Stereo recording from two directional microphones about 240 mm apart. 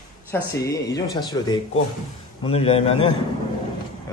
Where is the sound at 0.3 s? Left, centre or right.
Centre.